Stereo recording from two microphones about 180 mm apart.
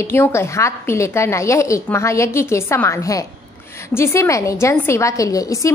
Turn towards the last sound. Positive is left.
turn(degrees=20)  # may be behind; listen again after turning